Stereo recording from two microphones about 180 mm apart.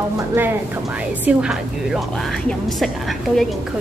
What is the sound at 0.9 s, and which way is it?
Speech, 5° right (ahead or behind).